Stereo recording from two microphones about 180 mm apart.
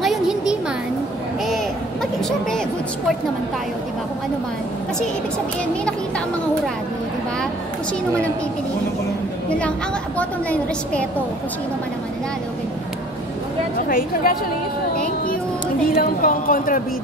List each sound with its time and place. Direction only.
0.0 s a sound: centre (ahead or behind)
5.9 s speech: 5° left (ahead or behind)
10.1 s a woman's voice: 5° left (ahead or behind)
13.8 s speech: 50° left (ahead or behind)
15.9 s speech: 50° left (ahead or behind)